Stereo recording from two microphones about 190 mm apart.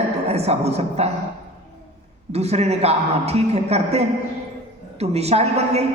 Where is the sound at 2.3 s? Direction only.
35° right (ahead or behind).